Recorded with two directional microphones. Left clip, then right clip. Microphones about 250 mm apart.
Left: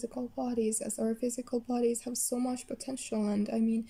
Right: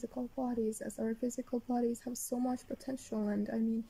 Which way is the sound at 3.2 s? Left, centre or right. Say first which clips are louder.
Left 3 dB; centre.